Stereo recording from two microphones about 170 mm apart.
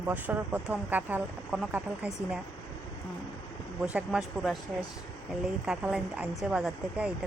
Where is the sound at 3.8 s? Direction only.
5° right (ahead or behind).